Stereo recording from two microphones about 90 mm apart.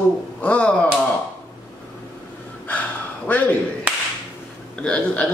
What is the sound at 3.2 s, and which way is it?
Speech, 20° left (ahead or behind).